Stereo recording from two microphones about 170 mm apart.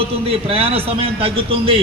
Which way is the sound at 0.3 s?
35° right (ahead or behind).